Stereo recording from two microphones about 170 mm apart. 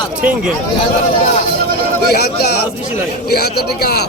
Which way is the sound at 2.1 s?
70° left (ahead or behind).